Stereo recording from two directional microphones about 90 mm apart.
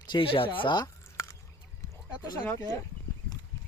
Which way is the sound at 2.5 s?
35° left (ahead or behind).